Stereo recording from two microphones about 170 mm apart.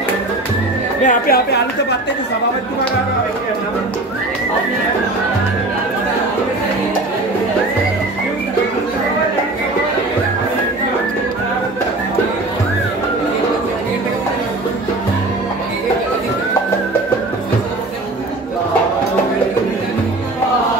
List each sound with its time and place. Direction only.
1.0 s a woman's voice: 60° left (ahead or behind)